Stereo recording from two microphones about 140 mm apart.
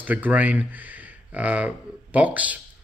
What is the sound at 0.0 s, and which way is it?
Speech, 10° right (ahead or behind).